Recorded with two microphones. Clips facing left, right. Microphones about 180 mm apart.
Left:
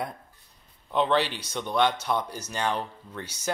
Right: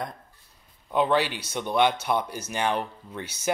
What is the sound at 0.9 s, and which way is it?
Speech, 10° right (ahead or behind).